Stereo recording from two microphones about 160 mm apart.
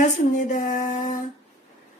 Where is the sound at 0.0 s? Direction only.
55° left (ahead or behind).